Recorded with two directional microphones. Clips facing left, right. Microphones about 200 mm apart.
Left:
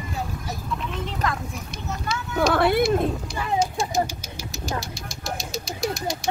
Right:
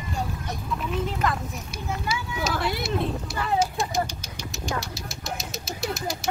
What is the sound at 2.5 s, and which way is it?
Speech, 60° left (ahead or behind).